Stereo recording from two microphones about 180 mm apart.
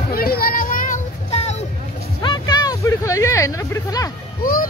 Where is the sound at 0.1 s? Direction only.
55° left (ahead or behind); by 1.6 s 35° left (ahead or behind).